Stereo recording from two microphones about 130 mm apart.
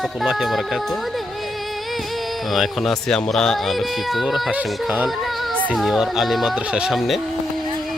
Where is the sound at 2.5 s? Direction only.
Centre (ahead or behind).